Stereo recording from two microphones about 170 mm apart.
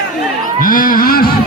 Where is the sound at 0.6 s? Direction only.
55° left (ahead or behind).